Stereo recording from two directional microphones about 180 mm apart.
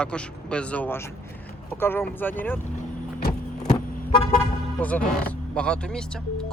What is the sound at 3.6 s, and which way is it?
Car, 25° left (ahead or behind).